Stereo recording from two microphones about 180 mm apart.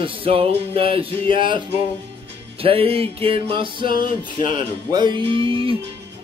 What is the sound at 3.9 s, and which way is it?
Music, 50° left (ahead or behind).